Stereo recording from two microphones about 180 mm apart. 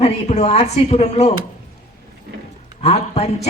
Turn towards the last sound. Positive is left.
turn(degrees=35)  # may be behind; listen again after turning